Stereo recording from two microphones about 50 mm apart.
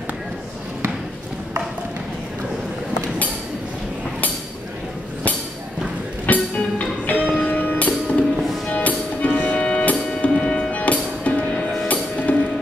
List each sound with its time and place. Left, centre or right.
6.2 s music: left
9.6 s music: centre
11.5 s music: centre
11.9 s music: left